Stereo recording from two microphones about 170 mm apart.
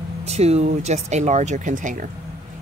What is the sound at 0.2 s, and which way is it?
Speech, 40° right (ahead or behind).